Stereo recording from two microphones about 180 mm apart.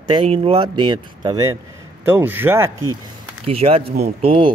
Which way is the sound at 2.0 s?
10° right (ahead or behind).